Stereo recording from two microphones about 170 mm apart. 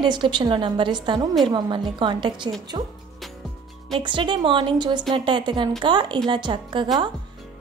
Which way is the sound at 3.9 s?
30° right (ahead or behind).